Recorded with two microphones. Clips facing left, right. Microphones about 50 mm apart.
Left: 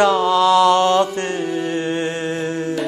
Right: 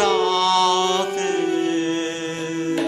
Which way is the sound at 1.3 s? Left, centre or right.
Right.